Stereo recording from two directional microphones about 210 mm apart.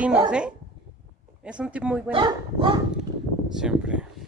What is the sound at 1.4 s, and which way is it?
Speech, 5° right (ahead or behind).